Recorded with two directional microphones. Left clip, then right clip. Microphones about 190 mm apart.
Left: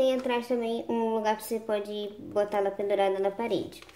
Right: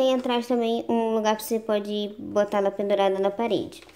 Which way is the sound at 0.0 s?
40° right (ahead or behind).